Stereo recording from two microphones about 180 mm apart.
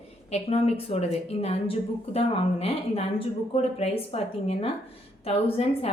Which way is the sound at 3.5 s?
35° left (ahead or behind).